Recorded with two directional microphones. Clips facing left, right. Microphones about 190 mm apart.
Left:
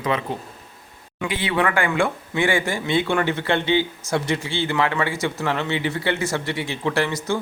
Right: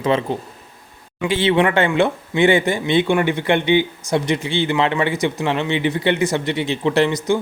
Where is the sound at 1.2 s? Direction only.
25° right (ahead or behind).